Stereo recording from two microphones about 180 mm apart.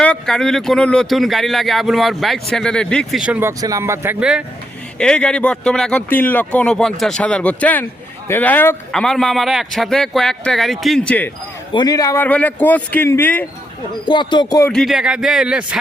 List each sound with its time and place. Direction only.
0.0 s speech: 5° left (ahead or behind)
3.6 s a man's voice: 20° right (ahead or behind)
4.9 s speech: 5° left (ahead or behind)
11.7 s speech: 25° left (ahead or behind)
14.1 s speech: 25° left (ahead or behind)
14.7 s speech: centre (ahead or behind)